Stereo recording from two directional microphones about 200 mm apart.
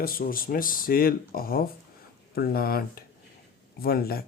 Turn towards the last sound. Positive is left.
turn(degrees=50)  # may be behind; listen again after turning